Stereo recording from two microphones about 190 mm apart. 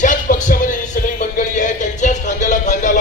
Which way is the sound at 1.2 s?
40° left (ahead or behind).